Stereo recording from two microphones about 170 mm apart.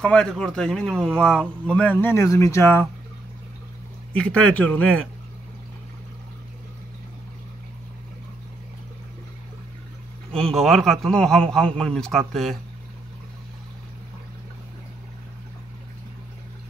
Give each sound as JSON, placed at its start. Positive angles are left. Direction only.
{"t": 0.0, "sound": "a man's voice", "side_deg": 5}
{"t": 4.2, "sound": "speech", "side_deg": 5}
{"t": 10.3, "sound": "a man's voice", "side_deg": 0}